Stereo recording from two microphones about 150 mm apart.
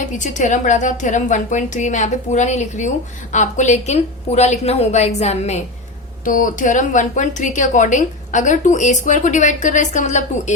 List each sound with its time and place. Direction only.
0.0 s a woman's voice: 55° left (ahead or behind)
6.2 s a woman's voice: 60° left (ahead or behind)